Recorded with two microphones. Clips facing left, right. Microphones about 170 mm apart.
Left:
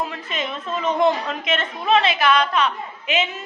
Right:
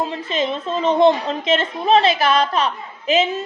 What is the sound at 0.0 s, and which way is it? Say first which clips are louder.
A woman's voice: right 5 dB; 30° right (ahead or behind).